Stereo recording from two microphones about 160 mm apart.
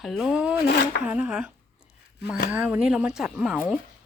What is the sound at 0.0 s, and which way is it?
Speech, centre (ahead or behind).